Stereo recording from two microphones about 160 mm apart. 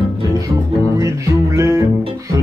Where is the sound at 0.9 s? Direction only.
20° right (ahead or behind).